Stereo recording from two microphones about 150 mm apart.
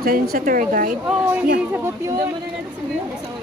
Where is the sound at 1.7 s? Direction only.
15° right (ahead or behind).